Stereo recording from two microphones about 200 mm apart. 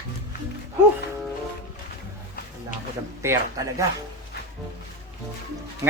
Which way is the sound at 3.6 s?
20° right (ahead or behind).